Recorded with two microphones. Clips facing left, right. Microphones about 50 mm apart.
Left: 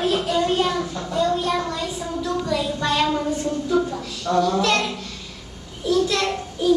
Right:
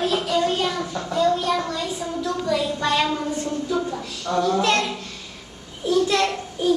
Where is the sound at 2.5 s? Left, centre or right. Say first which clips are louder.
Right 3 dB; centre.